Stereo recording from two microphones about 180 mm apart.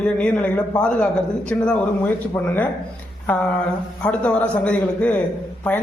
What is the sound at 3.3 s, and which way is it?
A man's voice, 10° left (ahead or behind).